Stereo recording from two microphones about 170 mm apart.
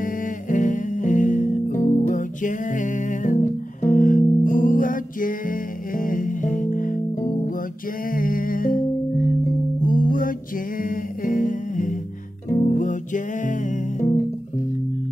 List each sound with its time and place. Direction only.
0.0 s music: 50° left (ahead or behind)
8.1 s music: 55° left (ahead or behind)
10.8 s humming: 55° left (ahead or behind)
12.6 s music: 50° left (ahead or behind)